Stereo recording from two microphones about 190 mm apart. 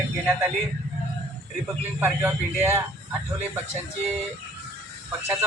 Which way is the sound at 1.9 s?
10° right (ahead or behind).